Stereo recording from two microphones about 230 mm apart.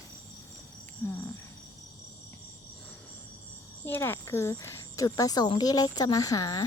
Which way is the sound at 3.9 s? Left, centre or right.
Centre.